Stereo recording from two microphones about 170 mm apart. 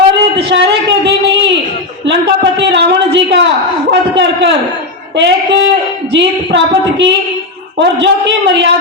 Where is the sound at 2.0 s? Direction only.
90° right.